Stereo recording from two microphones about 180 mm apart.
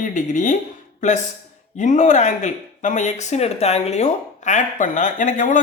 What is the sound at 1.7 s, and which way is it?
Speech, 40° left (ahead or behind).